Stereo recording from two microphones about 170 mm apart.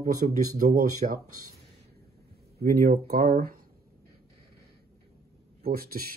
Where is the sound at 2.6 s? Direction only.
60° right (ahead or behind).